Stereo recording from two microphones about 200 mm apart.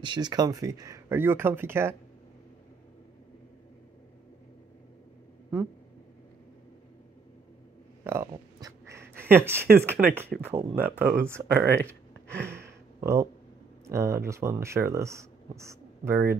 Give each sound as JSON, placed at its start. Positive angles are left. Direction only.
{"t": 0.0, "sound": "speech", "side_deg": -20}
{"t": 8.0, "sound": "a sound", "side_deg": -10}
{"t": 9.8, "sound": "speech", "side_deg": -10}
{"t": 13.0, "sound": "speech", "side_deg": -15}